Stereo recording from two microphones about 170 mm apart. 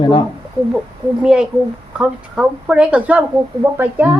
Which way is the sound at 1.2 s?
5° right (ahead or behind).